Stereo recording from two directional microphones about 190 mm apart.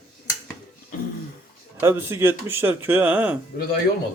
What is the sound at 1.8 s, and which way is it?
Speech, 10° right (ahead or behind).